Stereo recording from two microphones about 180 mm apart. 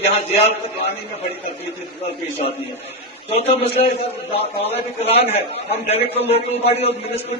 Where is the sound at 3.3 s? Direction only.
35° left (ahead or behind).